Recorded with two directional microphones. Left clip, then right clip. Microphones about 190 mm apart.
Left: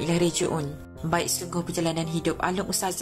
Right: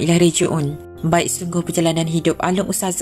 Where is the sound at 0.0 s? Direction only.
15° right (ahead or behind).